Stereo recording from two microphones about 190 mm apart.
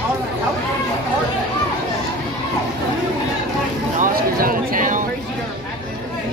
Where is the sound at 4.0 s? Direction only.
50° right (ahead or behind).